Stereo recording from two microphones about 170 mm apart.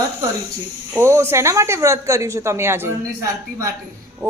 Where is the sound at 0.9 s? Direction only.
15° right (ahead or behind).